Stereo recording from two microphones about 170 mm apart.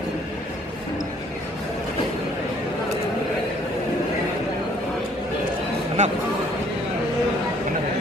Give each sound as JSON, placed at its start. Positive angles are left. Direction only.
{"t": 6.0, "sound": "a man's voice", "side_deg": -45}